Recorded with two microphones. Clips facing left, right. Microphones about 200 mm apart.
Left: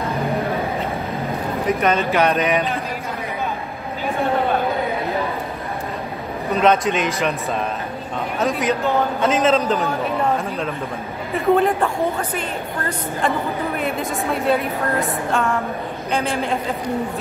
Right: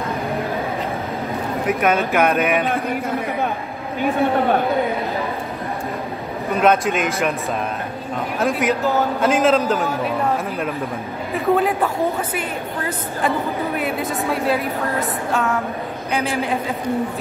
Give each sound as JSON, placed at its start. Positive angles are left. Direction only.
{"t": 1.7, "sound": "a man's voice", "side_deg": -10}
{"t": 2.6, "sound": "a sound", "side_deg": -50}
{"t": 6.6, "sound": "a man's voice", "side_deg": 0}
{"t": 8.4, "sound": "a man's voice", "side_deg": -5}
{"t": 14.3, "sound": "a man's voice", "side_deg": 0}